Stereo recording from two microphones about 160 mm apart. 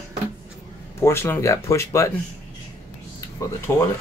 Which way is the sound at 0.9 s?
15° left (ahead or behind).